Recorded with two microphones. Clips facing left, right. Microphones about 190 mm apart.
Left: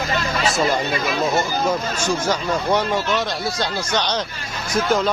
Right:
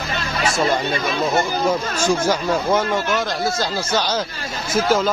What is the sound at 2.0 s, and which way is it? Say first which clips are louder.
Speech: right 6 dB; 10° right (ahead or behind).